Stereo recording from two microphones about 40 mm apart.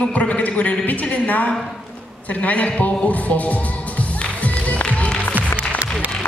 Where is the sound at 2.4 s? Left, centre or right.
Left.